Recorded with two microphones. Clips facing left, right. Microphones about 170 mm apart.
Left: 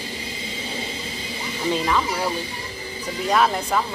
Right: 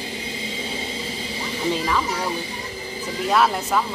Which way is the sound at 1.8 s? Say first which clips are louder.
Left 1 dB; 5° right (ahead or behind).